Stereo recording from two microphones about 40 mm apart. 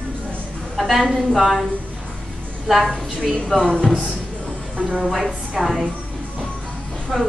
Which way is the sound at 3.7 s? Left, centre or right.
Left.